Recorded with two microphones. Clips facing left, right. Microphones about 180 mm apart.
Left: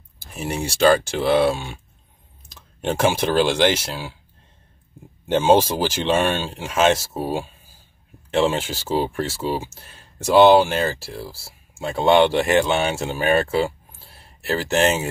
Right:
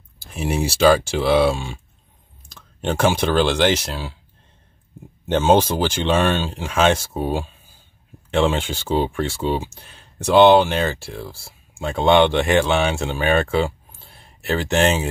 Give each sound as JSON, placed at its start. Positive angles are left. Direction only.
{"t": 0.7, "sound": "speech", "side_deg": 0}
{"t": 2.8, "sound": "speech", "side_deg": 10}
{"t": 5.2, "sound": "speech", "side_deg": 10}